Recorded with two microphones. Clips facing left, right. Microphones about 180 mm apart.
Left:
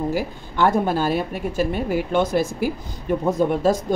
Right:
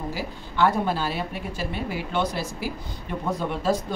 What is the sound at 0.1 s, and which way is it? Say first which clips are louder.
A woman's voice: left 7 dB; 50° left (ahead or behind).